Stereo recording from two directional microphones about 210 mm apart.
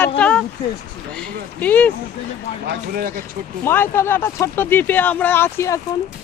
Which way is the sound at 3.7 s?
10° left (ahead or behind).